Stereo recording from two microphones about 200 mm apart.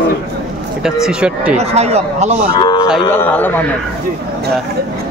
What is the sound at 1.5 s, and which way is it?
Speech, 30° right (ahead or behind).